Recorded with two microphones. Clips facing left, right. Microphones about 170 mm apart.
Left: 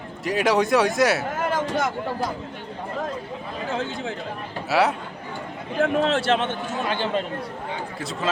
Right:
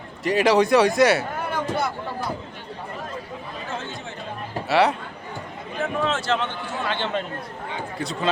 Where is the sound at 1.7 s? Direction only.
90° left.